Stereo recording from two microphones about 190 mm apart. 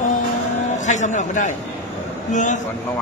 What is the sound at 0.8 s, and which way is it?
A man's voice, 40° left (ahead or behind).